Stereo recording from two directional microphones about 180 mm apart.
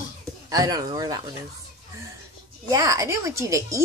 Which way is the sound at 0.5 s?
20° right (ahead or behind).